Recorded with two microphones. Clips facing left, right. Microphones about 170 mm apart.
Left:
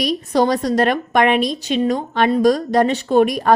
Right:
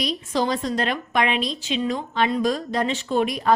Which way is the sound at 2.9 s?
55° left (ahead or behind).